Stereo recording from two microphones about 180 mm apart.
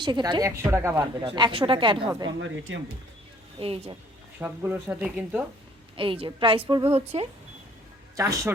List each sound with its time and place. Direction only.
0.0 s a woman's voice: 25° right (ahead or behind)
1.4 s a woman's voice: 30° right (ahead or behind)
2.4 s speech: 90° right
3.6 s speech: 30° right (ahead or behind)
4.4 s speech: 10° right (ahead or behind)
6.0 s a woman's voice: 30° right (ahead or behind)
8.1 s speech: 15° right (ahead or behind)